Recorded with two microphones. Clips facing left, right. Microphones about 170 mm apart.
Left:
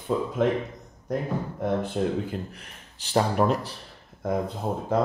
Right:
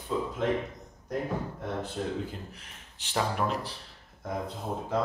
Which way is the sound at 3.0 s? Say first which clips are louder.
Left 7 dB; 40° left (ahead or behind).